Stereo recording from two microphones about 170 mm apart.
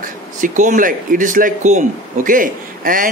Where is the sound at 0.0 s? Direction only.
50° right (ahead or behind).